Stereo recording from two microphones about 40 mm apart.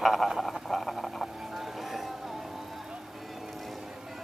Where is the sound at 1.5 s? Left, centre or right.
Centre.